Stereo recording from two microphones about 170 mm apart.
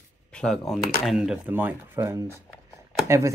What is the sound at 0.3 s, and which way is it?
Speech, 5° left (ahead or behind).